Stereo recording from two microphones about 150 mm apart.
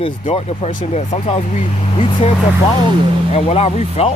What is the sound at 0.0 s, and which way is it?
Speech, 40° left (ahead or behind).